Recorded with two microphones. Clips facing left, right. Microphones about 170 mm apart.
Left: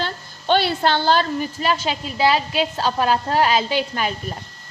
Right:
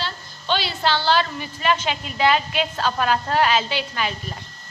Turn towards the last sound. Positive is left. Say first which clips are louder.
# left 4 dB
turn(degrees=45)  # may be behind; listen again after turning